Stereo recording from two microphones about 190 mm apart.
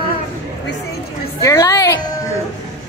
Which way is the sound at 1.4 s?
15° left (ahead or behind).